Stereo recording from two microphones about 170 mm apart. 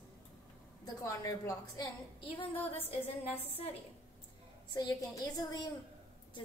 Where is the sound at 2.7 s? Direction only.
35° left (ahead or behind).